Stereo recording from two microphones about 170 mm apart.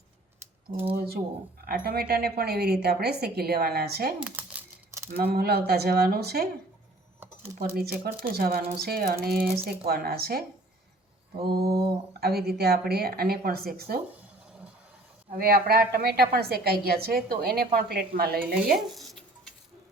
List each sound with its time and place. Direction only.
0.9 s a woman's voice: 65° right (ahead or behind)
4.2 s crumpling: 10° right (ahead or behind)
5.1 s a woman's voice: 65° right (ahead or behind)
7.6 s a woman's voice: 65° right (ahead or behind)
11.6 s a woman's voice: 65° right (ahead or behind)
15.3 s a woman's voice: 65° right (ahead or behind)
18.7 s a sound: centre (ahead or behind)